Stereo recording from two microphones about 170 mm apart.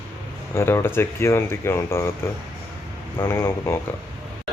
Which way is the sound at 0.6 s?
15° left (ahead or behind).